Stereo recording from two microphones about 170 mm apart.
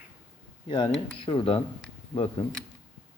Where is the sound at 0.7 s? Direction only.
30° left (ahead or behind).